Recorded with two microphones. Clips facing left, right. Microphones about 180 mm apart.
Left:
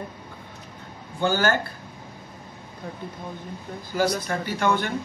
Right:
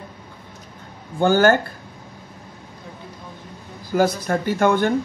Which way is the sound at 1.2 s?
50° right (ahead or behind).